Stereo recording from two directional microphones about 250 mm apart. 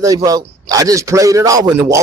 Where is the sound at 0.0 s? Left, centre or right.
Centre.